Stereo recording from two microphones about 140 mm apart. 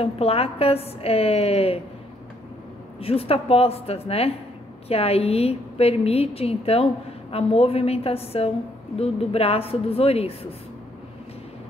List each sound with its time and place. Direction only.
0.0 s a woman's voice: 45° left (ahead or behind)
3.0 s a woman's voice: 45° left (ahead or behind)